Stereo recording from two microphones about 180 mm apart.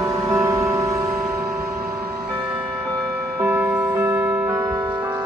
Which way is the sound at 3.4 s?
10° right (ahead or behind).